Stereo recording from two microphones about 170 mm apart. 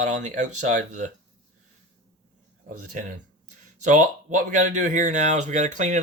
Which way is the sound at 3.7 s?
50° right (ahead or behind).